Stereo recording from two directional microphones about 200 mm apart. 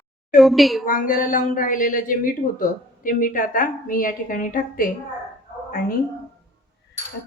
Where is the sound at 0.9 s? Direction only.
45° left (ahead or behind).